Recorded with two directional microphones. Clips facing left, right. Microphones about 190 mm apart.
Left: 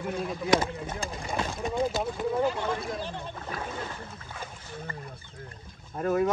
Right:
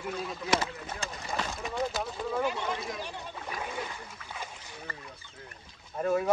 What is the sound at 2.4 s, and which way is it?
Speech, 15° right (ahead or behind).